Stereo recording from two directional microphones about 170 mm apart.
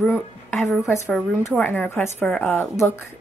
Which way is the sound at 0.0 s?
10° left (ahead or behind).